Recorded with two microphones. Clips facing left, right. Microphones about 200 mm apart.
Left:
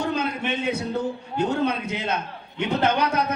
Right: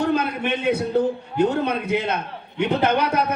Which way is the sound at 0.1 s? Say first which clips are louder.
Right 4 dB; 60° right (ahead or behind).